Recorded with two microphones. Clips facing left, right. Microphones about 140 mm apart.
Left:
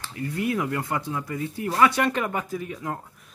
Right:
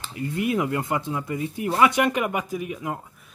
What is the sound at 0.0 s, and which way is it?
Speech, 20° right (ahead or behind).